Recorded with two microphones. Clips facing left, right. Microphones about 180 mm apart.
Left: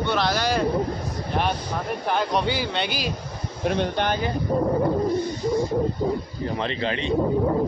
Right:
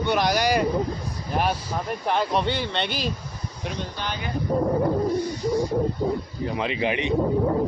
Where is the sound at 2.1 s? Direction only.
Centre (ahead or behind).